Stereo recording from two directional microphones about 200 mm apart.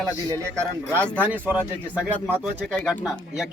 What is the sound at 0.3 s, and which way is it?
Speech, 15° right (ahead or behind).